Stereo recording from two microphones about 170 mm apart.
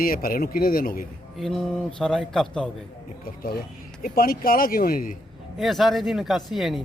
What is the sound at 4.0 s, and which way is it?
A man's voice, 55° left (ahead or behind).